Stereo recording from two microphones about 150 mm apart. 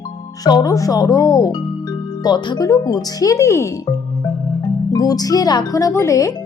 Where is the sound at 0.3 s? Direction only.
25° left (ahead or behind).